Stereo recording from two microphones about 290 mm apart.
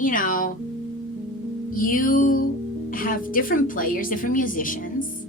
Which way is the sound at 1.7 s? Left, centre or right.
Left.